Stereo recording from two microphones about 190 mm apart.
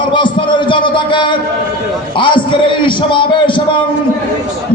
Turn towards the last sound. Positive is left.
turn(degrees=25)  # may be behind; listen again after turning